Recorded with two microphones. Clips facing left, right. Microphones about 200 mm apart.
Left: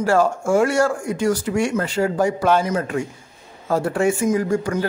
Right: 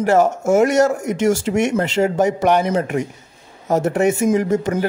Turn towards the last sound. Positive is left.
turn(degrees=-20)  # may be behind; listen again after turning